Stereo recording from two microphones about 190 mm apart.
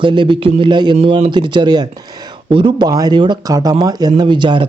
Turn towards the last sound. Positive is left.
turn(degrees=-25)  # may be behind; listen again after turning